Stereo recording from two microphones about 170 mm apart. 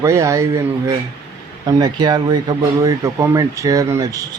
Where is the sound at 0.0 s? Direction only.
15° right (ahead or behind).